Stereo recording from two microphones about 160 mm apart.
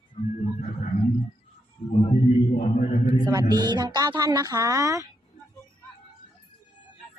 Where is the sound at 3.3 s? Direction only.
25° right (ahead or behind).